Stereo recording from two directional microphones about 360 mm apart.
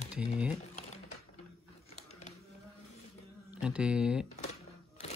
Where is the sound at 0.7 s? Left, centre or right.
Centre.